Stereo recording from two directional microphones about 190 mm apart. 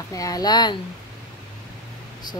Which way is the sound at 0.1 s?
20° left (ahead or behind).